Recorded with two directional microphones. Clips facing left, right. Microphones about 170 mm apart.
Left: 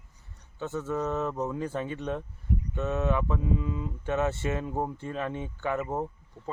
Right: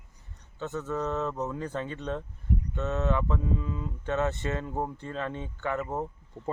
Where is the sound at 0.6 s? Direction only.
15° left (ahead or behind).